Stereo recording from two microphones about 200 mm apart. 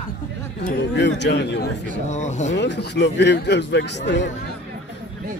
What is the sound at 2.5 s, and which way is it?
Speech, 60° left (ahead or behind).